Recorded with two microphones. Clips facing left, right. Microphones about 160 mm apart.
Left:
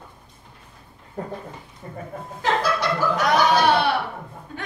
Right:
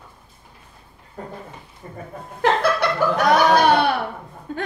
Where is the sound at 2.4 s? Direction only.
60° right (ahead or behind).